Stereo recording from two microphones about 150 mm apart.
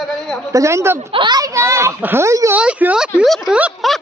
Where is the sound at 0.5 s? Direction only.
20° right (ahead or behind).